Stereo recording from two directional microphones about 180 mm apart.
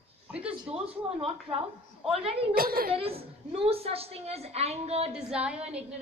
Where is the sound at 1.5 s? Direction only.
30° right (ahead or behind).